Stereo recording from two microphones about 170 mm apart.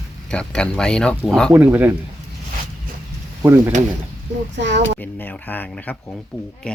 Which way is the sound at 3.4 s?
10° right (ahead or behind).